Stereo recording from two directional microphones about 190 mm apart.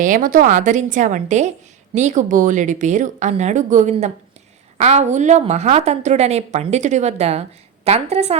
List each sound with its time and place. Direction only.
0.0 s a woman's voice: 45° right (ahead or behind)